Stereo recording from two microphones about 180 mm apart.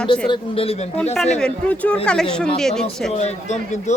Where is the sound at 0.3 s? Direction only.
30° left (ahead or behind).